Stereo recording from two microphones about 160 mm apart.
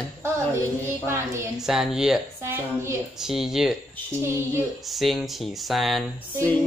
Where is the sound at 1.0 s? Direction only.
15° right (ahead or behind).